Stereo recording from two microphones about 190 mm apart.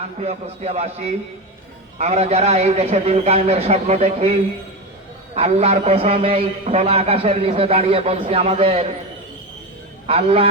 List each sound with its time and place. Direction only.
0.2 s a man's voice: 35° right (ahead or behind)
10.1 s a man's voice: 30° right (ahead or behind)